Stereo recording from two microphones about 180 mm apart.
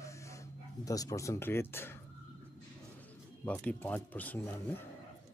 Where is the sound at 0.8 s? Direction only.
20° left (ahead or behind).